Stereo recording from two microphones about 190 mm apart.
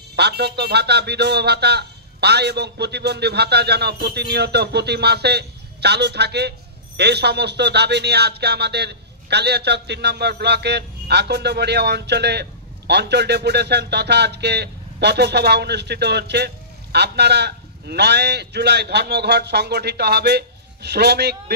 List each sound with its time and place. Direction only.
0.1 s speech: 60° right (ahead or behind)